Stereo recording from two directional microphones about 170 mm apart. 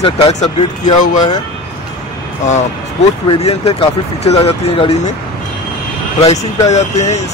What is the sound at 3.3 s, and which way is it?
Speech, 35° left (ahead or behind).